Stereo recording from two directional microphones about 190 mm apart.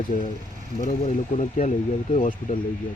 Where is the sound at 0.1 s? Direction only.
35° left (ahead or behind).